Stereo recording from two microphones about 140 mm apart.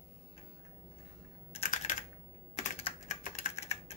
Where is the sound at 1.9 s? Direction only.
60° left (ahead or behind).